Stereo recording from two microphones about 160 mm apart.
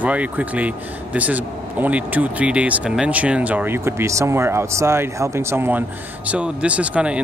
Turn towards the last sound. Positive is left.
turn(degrees=-5)  # may be behind; listen again after turning